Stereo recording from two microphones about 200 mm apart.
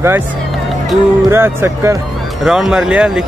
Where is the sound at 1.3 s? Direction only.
10° right (ahead or behind).